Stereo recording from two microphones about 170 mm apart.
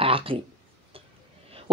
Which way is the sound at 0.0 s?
35° right (ahead or behind).